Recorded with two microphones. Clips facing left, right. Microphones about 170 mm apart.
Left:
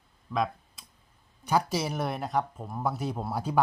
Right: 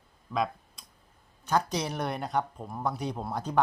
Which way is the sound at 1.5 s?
5° left (ahead or behind).